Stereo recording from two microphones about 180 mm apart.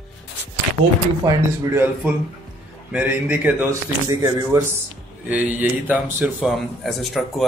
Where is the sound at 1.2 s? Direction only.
15° right (ahead or behind).